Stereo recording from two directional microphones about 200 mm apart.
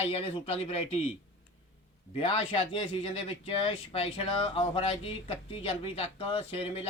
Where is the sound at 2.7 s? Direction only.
30° left (ahead or behind).